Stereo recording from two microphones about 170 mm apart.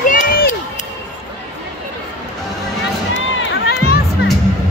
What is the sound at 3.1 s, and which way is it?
Crowd, 75° left (ahead or behind).